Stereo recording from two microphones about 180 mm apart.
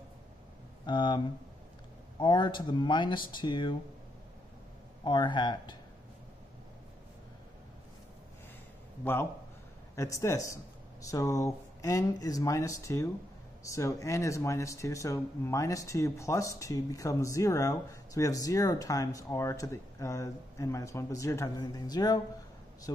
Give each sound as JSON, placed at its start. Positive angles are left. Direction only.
{"t": 0.8, "sound": "speech", "side_deg": 25}
{"t": 5.0, "sound": "speech", "side_deg": 25}
{"t": 9.0, "sound": "speech", "side_deg": 10}